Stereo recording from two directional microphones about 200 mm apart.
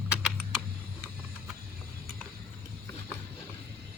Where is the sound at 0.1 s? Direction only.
5° right (ahead or behind).